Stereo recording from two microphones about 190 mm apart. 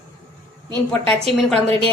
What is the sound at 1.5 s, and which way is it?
Speech, 30° right (ahead or behind).